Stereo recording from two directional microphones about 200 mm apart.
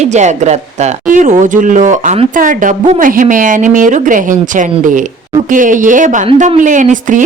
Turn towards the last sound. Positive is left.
turn(degrees=-40)  # may be behind; listen again after turning